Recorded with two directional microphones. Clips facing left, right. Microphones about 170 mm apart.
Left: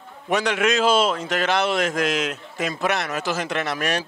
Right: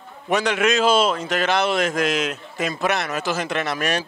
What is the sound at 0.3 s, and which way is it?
Speech, 10° right (ahead or behind).